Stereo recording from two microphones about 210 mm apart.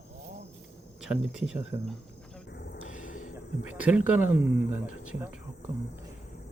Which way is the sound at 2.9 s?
40° left (ahead or behind).